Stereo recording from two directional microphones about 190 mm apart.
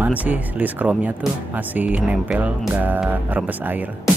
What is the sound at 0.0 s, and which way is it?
Speech, 10° right (ahead or behind).